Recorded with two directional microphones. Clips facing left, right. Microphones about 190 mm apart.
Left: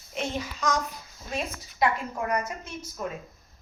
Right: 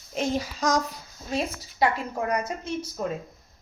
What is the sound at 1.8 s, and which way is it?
Speech, 35° right (ahead or behind).